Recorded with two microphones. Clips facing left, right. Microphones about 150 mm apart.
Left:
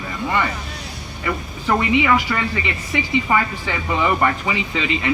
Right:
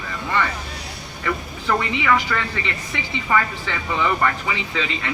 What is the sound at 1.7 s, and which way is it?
Speech, 15° left (ahead or behind).